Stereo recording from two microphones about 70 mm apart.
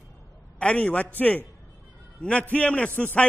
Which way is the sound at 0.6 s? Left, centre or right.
Left.